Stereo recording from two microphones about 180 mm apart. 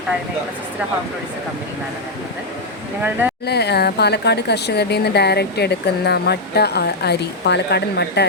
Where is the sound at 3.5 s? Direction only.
65° left (ahead or behind).